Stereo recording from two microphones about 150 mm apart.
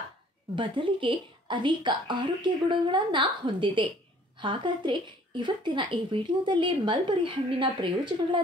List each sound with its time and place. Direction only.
0.6 s a woman's voice: 35° right (ahead or behind)